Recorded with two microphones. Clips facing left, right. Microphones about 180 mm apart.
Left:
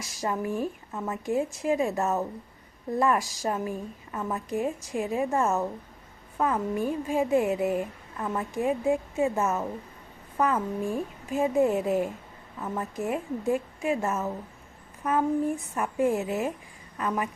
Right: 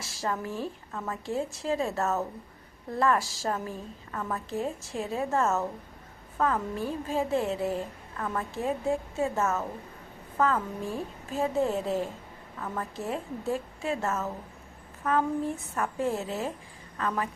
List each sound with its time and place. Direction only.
0.0 s a woman's voice: 20° left (ahead or behind)